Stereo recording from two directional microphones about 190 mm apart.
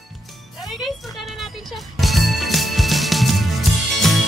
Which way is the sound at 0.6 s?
Centre (ahead or behind).